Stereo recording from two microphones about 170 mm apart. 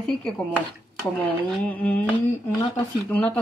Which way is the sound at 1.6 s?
10° left (ahead or behind).